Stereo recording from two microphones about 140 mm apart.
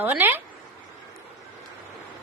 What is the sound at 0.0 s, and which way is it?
Speech, 15° right (ahead or behind).